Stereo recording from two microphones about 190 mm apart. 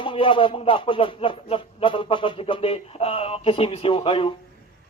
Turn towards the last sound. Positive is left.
turn(degrees=30)  # may be behind; listen again after turning